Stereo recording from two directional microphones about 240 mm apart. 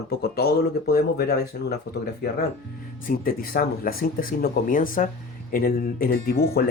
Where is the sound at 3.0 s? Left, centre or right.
Left.